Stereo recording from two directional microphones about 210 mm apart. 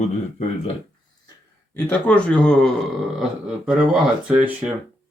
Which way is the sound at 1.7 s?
5° left (ahead or behind).